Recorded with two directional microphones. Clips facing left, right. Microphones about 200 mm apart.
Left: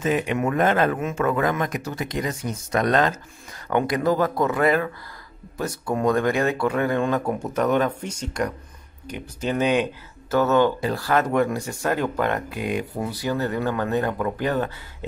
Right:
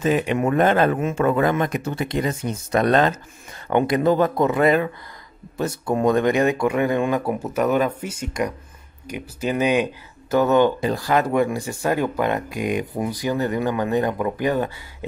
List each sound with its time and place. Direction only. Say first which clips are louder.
0.0 s speech: right 3 dB; 30° right (ahead or behind); by 15.0 s 15° right (ahead or behind)